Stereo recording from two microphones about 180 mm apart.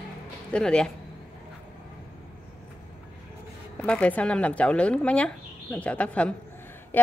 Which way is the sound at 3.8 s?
5° left (ahead or behind).